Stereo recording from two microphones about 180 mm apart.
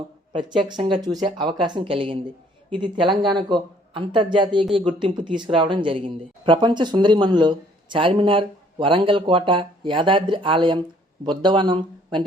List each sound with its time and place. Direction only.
0.5 s speech: centre (ahead or behind)
1.0 s speech: 25° right (ahead or behind)